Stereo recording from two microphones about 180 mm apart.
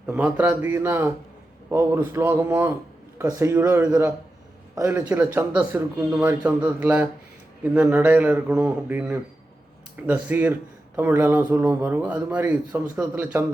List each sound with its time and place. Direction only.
0.0 s a man's voice: 5° right (ahead or behind)